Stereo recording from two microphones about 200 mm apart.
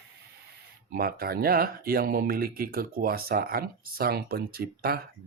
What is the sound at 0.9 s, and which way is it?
Speech, 45° right (ahead or behind).